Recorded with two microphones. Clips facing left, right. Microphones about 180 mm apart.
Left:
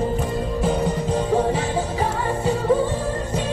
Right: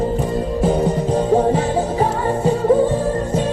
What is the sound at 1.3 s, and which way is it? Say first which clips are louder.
Music: right 5 dB; 45° right (ahead or behind).